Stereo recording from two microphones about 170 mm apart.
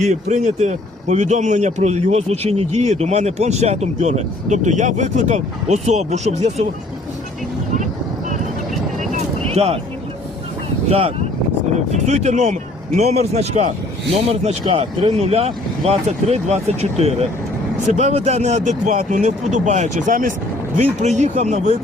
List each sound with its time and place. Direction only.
0.0 s speech: 45° right (ahead or behind)
9.0 s vehicle: 40° right (ahead or behind)
10.8 s speech: 35° right (ahead or behind)